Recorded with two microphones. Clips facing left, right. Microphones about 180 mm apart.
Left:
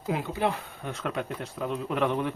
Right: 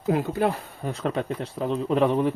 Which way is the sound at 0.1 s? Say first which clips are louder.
Right 5 dB; 45° right (ahead or behind).